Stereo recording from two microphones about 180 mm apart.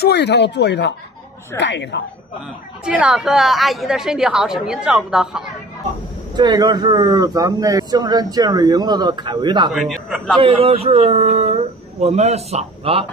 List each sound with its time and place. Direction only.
0.0 s speech: 70° left (ahead or behind)
1.6 s speech: 85° left
2.8 s a woman's voice: 5° right (ahead or behind)
6.3 s speech: 25° right (ahead or behind)
9.7 s a woman's voice: centre (ahead or behind)
10.4 s speech: 30° right (ahead or behind)